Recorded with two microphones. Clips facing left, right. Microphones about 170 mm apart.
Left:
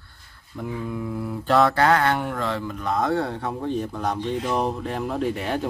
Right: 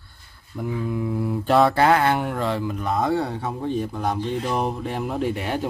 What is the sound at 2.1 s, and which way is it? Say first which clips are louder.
Speech: right 2 dB; 5° right (ahead or behind).